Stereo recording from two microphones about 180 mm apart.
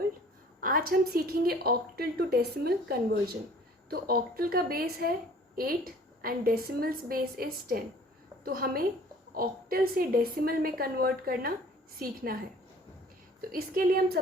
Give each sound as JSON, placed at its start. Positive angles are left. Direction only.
{"t": 0.6, "sound": "a woman's voice", "side_deg": -55}
{"t": 13.5, "sound": "a woman's voice", "side_deg": -55}